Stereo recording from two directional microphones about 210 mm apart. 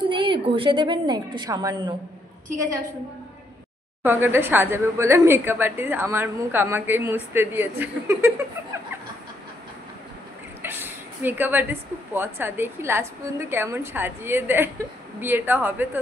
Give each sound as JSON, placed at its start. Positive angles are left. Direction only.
{"t": 0.1, "sound": "a woman's voice", "side_deg": -25}
{"t": 4.0, "sound": "a woman's voice", "side_deg": -10}
{"t": 10.6, "sound": "a woman's voice", "side_deg": -10}